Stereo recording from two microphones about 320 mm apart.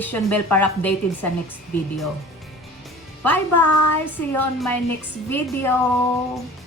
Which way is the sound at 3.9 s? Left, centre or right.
Left.